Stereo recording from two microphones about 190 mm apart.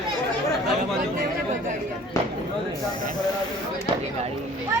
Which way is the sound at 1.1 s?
45° right (ahead or behind).